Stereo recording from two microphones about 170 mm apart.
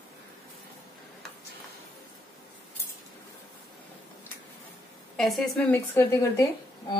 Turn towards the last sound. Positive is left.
turn(degrees=20)  # may be behind; listen again after turning